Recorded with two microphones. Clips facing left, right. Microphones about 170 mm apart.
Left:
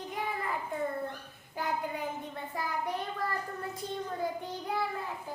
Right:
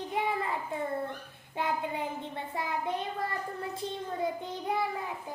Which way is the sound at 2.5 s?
25° right (ahead or behind).